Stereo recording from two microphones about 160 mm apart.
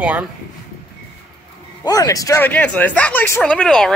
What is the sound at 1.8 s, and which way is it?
Speech, 20° left (ahead or behind).